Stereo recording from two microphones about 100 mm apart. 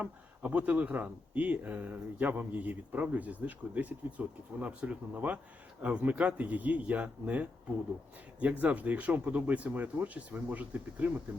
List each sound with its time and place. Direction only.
0.0 s speech: 15° right (ahead or behind)